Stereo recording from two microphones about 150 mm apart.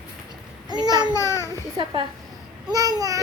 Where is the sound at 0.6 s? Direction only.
25° right (ahead or behind).